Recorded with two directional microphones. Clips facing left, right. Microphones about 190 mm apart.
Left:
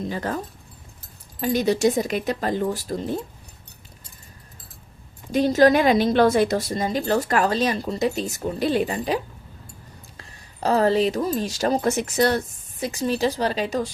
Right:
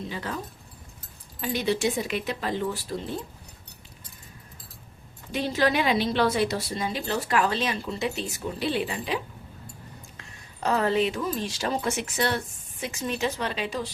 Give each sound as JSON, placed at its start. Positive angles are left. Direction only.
{"t": 0.1, "sound": "a woman's voice", "side_deg": 45}
{"t": 1.4, "sound": "a woman's voice", "side_deg": 45}
{"t": 5.3, "sound": "a woman's voice", "side_deg": 45}